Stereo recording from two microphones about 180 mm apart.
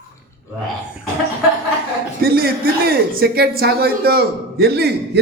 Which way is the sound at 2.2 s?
55° right (ahead or behind).